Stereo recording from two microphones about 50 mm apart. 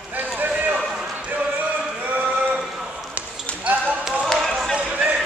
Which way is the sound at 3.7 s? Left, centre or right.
Right.